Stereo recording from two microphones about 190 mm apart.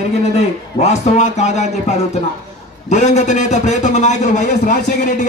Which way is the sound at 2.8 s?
35° left (ahead or behind).